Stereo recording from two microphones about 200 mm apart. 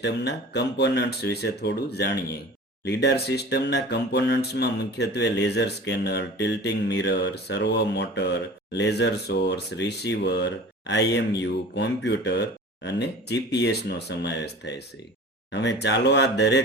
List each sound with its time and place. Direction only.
0.0 s speech: 60° left (ahead or behind)